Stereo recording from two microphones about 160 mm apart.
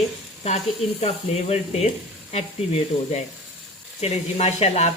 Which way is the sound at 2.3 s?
40° left (ahead or behind).